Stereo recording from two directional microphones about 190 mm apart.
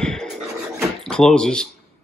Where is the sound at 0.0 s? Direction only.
5° left (ahead or behind).